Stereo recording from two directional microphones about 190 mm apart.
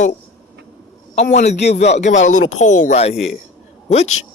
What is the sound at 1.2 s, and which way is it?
Speech, 35° left (ahead or behind).